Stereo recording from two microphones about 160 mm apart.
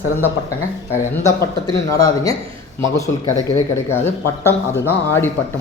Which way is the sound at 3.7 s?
15° left (ahead or behind).